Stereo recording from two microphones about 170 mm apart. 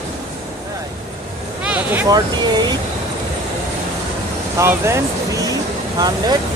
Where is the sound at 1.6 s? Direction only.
10° right (ahead or behind).